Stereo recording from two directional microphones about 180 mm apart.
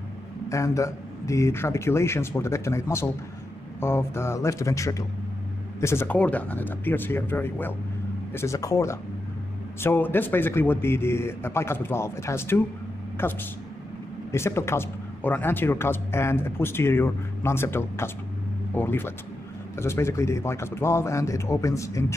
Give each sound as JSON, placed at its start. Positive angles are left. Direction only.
{"t": 0.5, "sound": "speech", "side_deg": 15}